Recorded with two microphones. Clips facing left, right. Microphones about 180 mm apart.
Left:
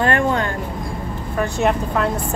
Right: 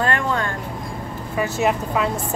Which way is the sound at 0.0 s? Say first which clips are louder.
Left 4 dB; 25° left (ahead or behind).